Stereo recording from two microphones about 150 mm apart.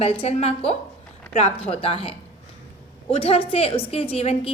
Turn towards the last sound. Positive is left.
turn(degrees=40)  # may be behind; listen again after turning